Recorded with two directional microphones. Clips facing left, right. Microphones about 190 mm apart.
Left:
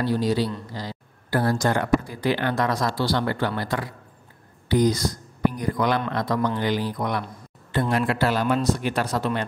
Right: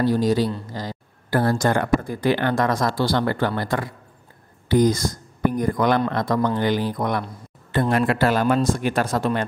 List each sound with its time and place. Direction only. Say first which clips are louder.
0.0 s speech: right 3 dB; 45° right (ahead or behind)